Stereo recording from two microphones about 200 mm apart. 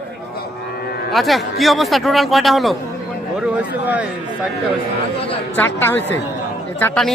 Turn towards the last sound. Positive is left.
turn(degrees=5)  # may be behind; listen again after turning